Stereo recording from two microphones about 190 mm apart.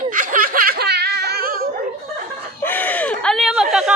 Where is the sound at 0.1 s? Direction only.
45° right (ahead or behind).